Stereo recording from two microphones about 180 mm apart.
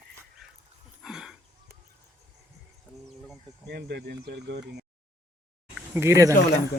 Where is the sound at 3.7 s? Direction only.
70° right (ahead or behind).